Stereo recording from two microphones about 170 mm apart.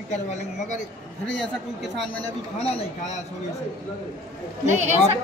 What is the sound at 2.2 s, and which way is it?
Speech, 35° left (ahead or behind).